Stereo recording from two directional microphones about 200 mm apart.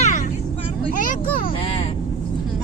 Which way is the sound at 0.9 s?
40° left (ahead or behind).